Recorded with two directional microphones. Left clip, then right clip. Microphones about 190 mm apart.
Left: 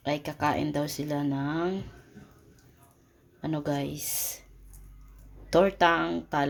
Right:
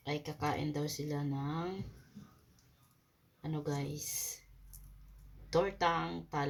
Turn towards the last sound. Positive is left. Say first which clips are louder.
# left 9 dB
turn(degrees=60)  # may be behind; listen again after turning